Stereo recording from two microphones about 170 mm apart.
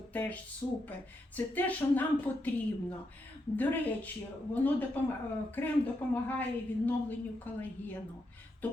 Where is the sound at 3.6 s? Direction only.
10° left (ahead or behind).